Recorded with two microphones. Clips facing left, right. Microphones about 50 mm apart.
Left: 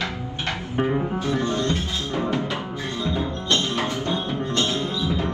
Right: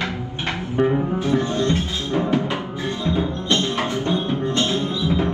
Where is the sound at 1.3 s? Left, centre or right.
Right.